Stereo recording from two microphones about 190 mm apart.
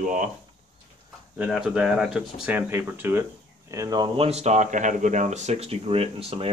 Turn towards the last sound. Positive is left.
turn(degrees=-30)  # may be behind; listen again after turning